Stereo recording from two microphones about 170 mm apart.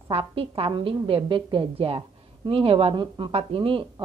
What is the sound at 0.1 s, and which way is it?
A woman's voice, 35° right (ahead or behind).